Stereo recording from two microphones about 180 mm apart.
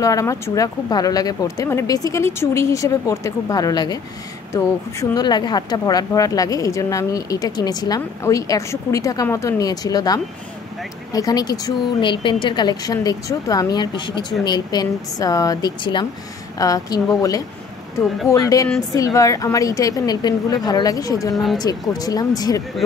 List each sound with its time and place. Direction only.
0.0 s a woman's voice: 20° left (ahead or behind)